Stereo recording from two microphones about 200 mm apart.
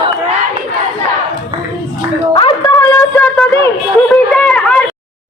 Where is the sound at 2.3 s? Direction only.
25° left (ahead or behind).